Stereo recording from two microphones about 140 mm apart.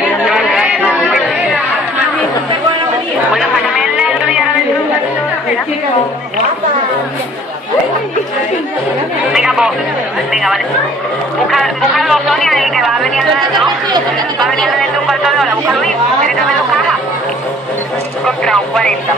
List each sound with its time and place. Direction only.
0.2 s chatter: 5° right (ahead or behind)
3.3 s a sound: 5° right (ahead or behind)
9.3 s chatter: 5° right (ahead or behind)
10.3 s a woman's voice: centre (ahead or behind)
18.2 s a woman's voice: 5° left (ahead or behind)